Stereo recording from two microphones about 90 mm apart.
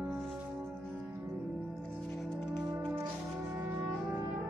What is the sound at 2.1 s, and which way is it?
Music, centre (ahead or behind).